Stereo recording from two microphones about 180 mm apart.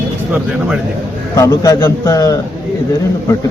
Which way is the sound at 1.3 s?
20° left (ahead or behind).